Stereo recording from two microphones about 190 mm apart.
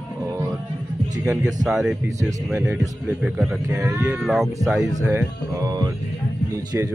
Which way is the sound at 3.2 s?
5° right (ahead or behind).